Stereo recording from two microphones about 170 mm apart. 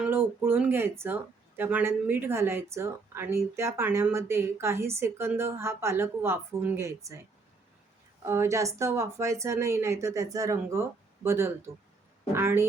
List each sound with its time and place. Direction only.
0.0 s speech: 10° right (ahead or behind)
8.2 s speech: 15° right (ahead or behind)